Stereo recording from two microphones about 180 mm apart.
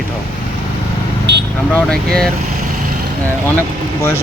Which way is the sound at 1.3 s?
75° right (ahead or behind).